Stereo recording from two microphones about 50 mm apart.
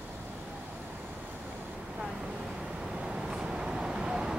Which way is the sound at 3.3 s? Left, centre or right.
Centre.